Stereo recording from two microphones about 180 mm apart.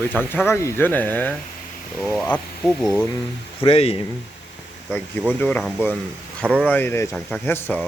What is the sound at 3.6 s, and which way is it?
Speech, 30° left (ahead or behind).